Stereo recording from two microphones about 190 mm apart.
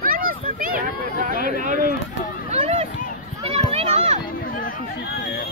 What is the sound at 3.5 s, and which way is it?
Children playing, 35° right (ahead or behind).